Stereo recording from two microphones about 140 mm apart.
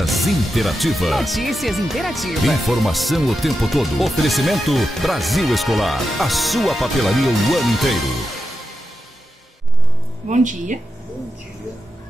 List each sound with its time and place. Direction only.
0.0 s speech: centre (ahead or behind)
10.2 s speech: 60° right (ahead or behind)